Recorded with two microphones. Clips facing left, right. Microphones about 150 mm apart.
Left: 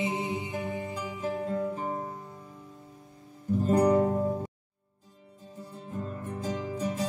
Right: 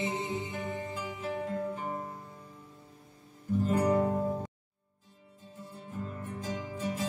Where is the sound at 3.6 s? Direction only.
40° left (ahead or behind).